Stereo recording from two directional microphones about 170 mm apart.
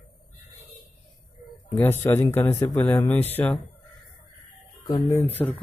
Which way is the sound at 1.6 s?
20° left (ahead or behind).